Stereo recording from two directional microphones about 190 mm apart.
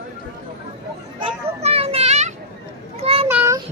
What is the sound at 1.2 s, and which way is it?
Children playing, 30° right (ahead or behind).